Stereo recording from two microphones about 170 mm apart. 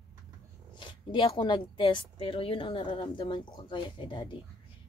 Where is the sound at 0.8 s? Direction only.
25° left (ahead or behind).